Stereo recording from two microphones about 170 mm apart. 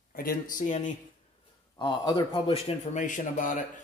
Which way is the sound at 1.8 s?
25° left (ahead or behind).